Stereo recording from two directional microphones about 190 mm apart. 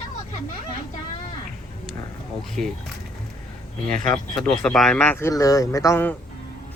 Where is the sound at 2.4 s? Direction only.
Centre (ahead or behind).